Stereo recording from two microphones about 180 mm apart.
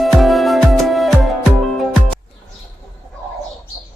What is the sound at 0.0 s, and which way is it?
Music, centre (ahead or behind).